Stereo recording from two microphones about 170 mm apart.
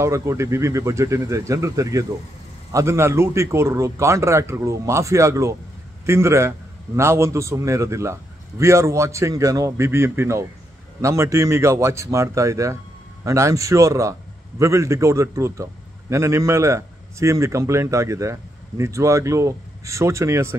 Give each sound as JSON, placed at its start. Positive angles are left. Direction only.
{"t": 0.0, "sound": "a man's voice", "side_deg": -15}